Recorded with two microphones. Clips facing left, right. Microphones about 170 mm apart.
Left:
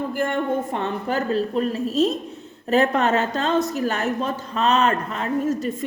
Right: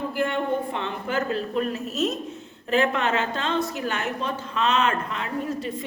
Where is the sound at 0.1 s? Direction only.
45° left (ahead or behind).